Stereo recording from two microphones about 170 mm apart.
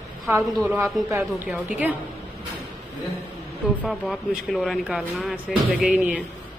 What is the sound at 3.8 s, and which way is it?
Speech, centre (ahead or behind).